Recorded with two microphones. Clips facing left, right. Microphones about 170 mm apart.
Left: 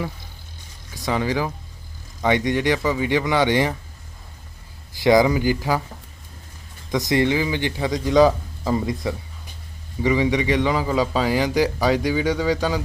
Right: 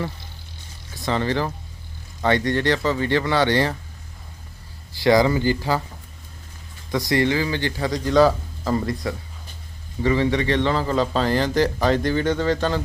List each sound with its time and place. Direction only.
1.0 s a man's voice: 10° left (ahead or behind)
4.9 s a man's voice: 20° left (ahead or behind)
6.9 s a man's voice: 20° left (ahead or behind)